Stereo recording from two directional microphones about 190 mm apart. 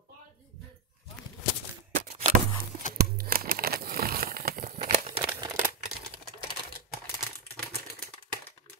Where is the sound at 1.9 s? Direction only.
35° right (ahead or behind).